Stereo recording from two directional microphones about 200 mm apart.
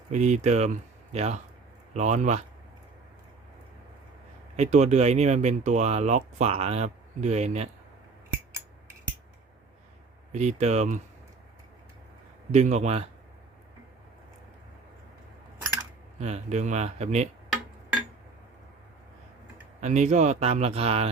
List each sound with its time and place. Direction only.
0.1 s speech: 35° right (ahead or behind)
4.5 s speech: 35° right (ahead or behind)
10.3 s speech: 35° right (ahead or behind)
12.5 s speech: 35° right (ahead or behind)
16.1 s speech: 35° right (ahead or behind)
19.8 s speech: 35° right (ahead or behind)